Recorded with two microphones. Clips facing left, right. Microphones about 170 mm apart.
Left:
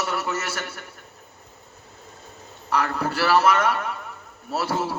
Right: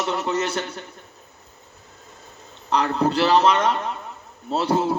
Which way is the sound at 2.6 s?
25° right (ahead or behind).